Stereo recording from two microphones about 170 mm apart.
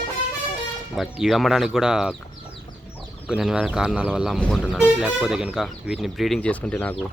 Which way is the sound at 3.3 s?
5° right (ahead or behind).